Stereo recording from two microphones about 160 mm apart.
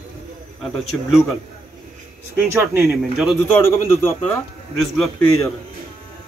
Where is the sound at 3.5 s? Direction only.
15° left (ahead or behind).